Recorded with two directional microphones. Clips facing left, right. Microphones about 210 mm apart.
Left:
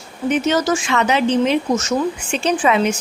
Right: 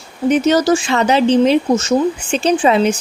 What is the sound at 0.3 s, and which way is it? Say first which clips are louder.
Speech: right 5 dB; 35° right (ahead or behind).